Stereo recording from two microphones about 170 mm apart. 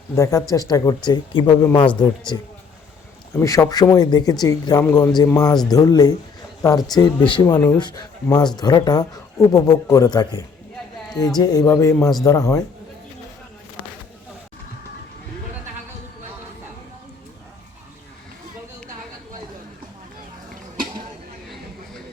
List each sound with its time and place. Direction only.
0.2 s speech: 20° left (ahead or behind)
3.4 s a man's voice: 20° left (ahead or behind)